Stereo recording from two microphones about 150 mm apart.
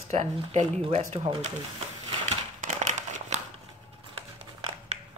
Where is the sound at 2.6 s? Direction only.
55° right (ahead or behind).